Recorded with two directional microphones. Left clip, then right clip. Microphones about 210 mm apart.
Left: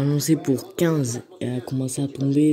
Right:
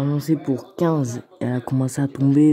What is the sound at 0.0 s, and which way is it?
Speech, 5° left (ahead or behind).